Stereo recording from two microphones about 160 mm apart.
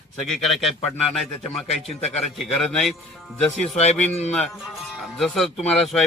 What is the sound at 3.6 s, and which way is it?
Speech, 40° left (ahead or behind).